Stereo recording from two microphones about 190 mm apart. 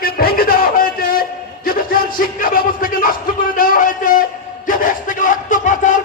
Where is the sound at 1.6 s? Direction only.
50° left (ahead or behind).